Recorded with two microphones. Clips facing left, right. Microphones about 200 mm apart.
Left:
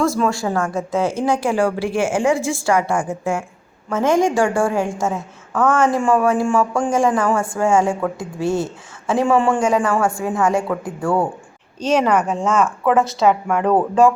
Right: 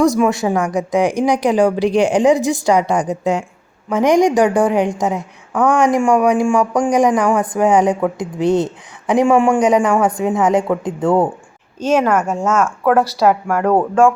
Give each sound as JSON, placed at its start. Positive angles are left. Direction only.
{"t": 0.0, "sound": "a woman's voice", "side_deg": -15}
{"t": 11.9, "sound": "speech", "side_deg": -5}